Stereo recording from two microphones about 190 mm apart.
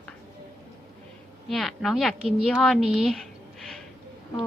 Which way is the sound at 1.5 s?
Centre (ahead or behind).